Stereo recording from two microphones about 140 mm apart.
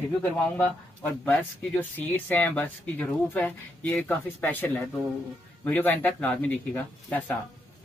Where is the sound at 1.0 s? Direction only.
10° left (ahead or behind).